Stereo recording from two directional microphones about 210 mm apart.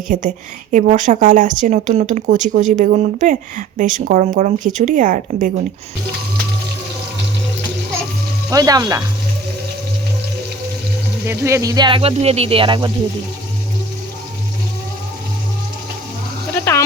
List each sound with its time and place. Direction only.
0.1 s a woman's voice: 35° right (ahead or behind)
8.4 s speech: 15° right (ahead or behind)
11.3 s speech: 15° right (ahead or behind)